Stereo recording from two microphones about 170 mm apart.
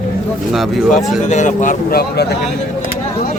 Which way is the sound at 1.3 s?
45° left (ahead or behind).